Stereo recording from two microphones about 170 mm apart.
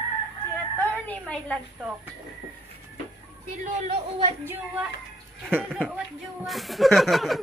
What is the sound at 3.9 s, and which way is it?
Speech, 35° right (ahead or behind).